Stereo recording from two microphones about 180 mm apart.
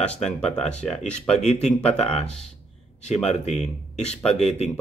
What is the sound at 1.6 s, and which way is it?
Speech, 5° left (ahead or behind).